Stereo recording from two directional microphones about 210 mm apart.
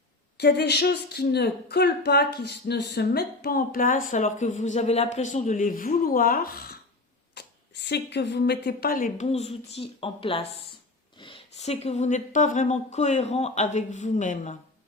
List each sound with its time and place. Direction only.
0.3 s speech: 50° left (ahead or behind)
7.4 s a sound: 55° left (ahead or behind)
7.9 s speech: 55° left (ahead or behind); by 14.5 s 35° left (ahead or behind)